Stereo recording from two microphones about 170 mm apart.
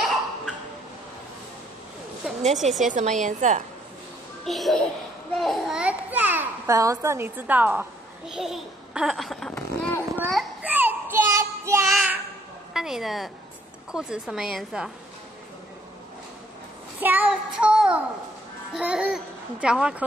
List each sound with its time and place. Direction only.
2.5 s a child's voice: centre (ahead or behind)
2.9 s a woman's voice: 45° right (ahead or behind)
4.5 s a child's voice: centre (ahead or behind)
8.3 s babbling: 5° right (ahead or behind)
9.6 s a sound: 15° left (ahead or behind)
10.3 s child singing: 10° right (ahead or behind)
11.9 s a sound: centre (ahead or behind)
12.7 s a child's voice: centre (ahead or behind)
17.0 s child singing: 10° right (ahead or behind)
18.7 s a child's voice: 5° right (ahead or behind)